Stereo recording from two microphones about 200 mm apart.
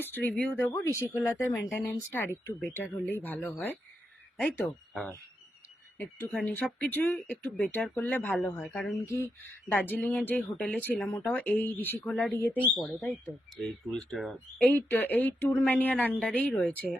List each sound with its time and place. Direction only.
0.1 s speech: 10° left (ahead or behind)